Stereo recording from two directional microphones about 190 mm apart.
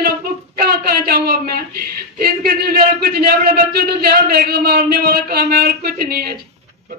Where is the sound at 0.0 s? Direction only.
55° right (ahead or behind).